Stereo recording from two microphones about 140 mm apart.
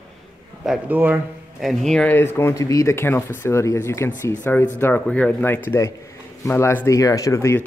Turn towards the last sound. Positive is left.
turn(degrees=20)  # may be behind; listen again after turning